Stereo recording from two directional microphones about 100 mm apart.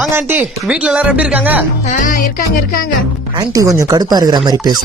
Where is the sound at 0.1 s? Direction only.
20° right (ahead or behind).